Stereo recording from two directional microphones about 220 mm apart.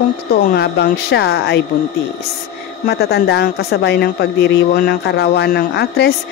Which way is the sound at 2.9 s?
45° left (ahead or behind).